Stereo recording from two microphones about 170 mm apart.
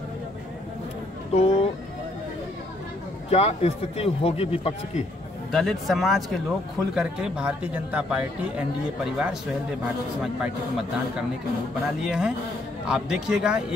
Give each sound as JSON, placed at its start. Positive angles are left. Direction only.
{"t": 1.3, "sound": "a sound", "side_deg": 35}
{"t": 3.3, "sound": "speech", "side_deg": 40}
{"t": 5.5, "sound": "a man's voice", "side_deg": 0}
{"t": 12.0, "sound": "speech", "side_deg": -5}